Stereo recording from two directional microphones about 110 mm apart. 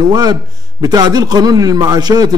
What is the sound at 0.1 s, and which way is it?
A man's voice, 35° right (ahead or behind).